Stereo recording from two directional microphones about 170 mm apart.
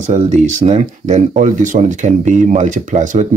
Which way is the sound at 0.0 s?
45° right (ahead or behind).